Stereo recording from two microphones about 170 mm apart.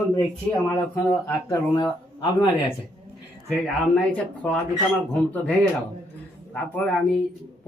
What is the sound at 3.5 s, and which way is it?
Speech, 5° left (ahead or behind).